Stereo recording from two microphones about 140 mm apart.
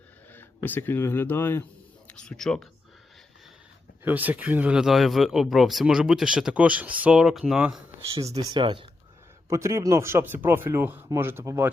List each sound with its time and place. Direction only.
0.3 s speech: 15° left (ahead or behind)
2.0 s speech: 5° left (ahead or behind)
4.0 s speech: 10° right (ahead or behind)
8.4 s speech: 35° right (ahead or behind)
9.5 s speech: 20° right (ahead or behind)